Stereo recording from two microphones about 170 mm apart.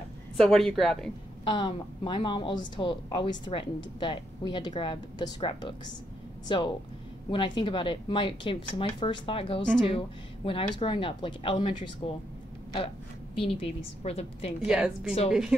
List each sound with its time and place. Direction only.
0.4 s a woman's voice: centre (ahead or behind)
1.4 s speech: 30° left (ahead or behind)
14.6 s a woman's voice: 5° right (ahead or behind)